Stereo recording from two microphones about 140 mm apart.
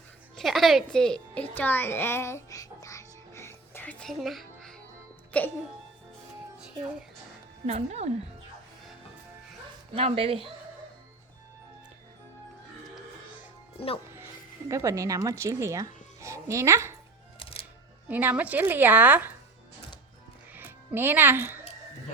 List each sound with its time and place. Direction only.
0.3 s a woman's voice: centre (ahead or behind); by 3.9 s 15° left (ahead or behind)
4.0 s a child's voice: centre (ahead or behind)
7.7 s speech: 50° right (ahead or behind)
9.9 s speech: 45° right (ahead or behind)
13.7 s speech: 45° left (ahead or behind)
14.7 s speech: 20° right (ahead or behind)
18.1 s a woman's voice: 15° right (ahead or behind)
20.5 s music: 10° right (ahead or behind)